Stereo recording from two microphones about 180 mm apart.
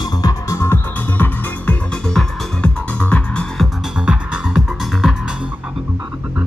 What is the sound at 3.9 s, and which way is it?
Music, 5° right (ahead or behind).